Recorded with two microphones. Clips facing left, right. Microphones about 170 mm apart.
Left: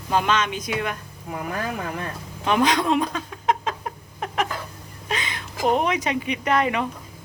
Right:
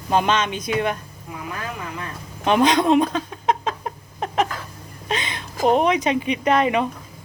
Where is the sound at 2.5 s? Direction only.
20° right (ahead or behind).